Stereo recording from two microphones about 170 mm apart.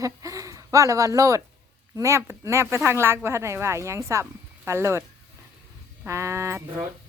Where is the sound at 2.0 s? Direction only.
15° right (ahead or behind).